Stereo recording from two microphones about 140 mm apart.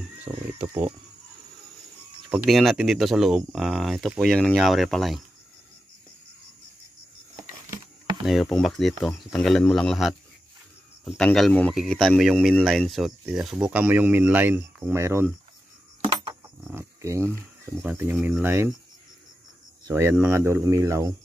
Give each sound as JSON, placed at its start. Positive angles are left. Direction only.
{"t": 0.5, "sound": "speech", "side_deg": -15}
{"t": 2.2, "sound": "speech", "side_deg": 0}
{"t": 8.3, "sound": "speech", "side_deg": 5}
{"t": 16.6, "sound": "speech", "side_deg": -20}
{"t": 19.9, "sound": "speech", "side_deg": -20}